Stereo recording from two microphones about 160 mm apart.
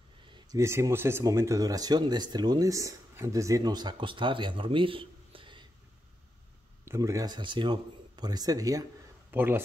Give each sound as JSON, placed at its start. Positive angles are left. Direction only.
{"t": 0.3, "sound": "speech", "side_deg": -20}
{"t": 6.8, "sound": "a man's voice", "side_deg": -20}